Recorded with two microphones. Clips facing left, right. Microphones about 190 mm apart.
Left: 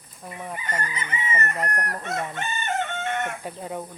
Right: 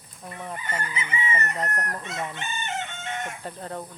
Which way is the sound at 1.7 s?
50° left (ahead or behind).